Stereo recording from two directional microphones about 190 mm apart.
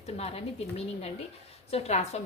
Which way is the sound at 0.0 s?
35° left (ahead or behind).